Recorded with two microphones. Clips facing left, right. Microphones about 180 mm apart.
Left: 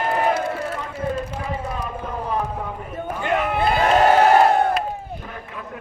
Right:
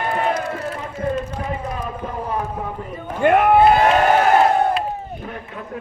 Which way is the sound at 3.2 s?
55° right (ahead or behind).